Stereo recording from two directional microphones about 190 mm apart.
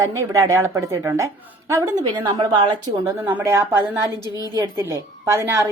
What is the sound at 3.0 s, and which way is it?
A woman's voice, 10° right (ahead or behind).